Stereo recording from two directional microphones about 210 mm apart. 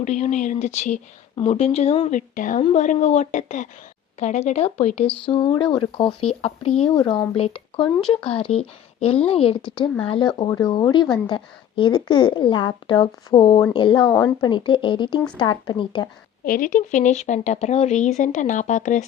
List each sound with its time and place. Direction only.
0.0 s a woman's voice: 35° left (ahead or behind)
16.4 s speech: 40° left (ahead or behind)